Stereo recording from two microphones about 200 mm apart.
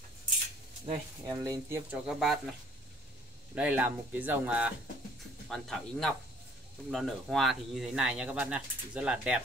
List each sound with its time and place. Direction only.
1.2 s speech: 15° right (ahead or behind)
2.0 s speech: centre (ahead or behind)
3.5 s speech: 5° right (ahead or behind)